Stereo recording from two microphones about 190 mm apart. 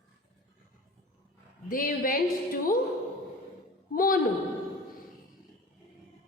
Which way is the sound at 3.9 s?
50° left (ahead or behind).